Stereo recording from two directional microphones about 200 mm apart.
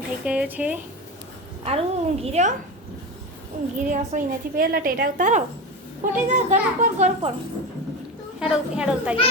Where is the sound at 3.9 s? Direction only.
40° right (ahead or behind).